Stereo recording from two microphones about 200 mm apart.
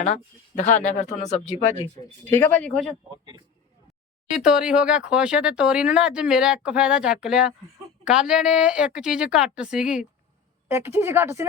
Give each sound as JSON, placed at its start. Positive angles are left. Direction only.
{"t": 0.6, "sound": "speech", "side_deg": 40}
{"t": 2.2, "sound": "speech", "side_deg": 10}
{"t": 4.4, "sound": "speech", "side_deg": -5}